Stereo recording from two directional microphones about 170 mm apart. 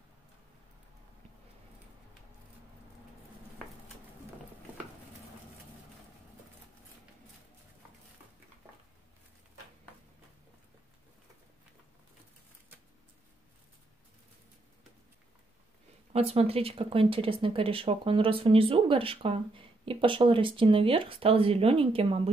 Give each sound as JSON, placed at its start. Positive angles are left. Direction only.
{"t": 16.1, "sound": "speech", "side_deg": -35}